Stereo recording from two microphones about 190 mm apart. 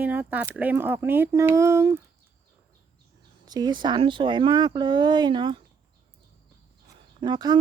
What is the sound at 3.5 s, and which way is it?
Speech, 20° right (ahead or behind).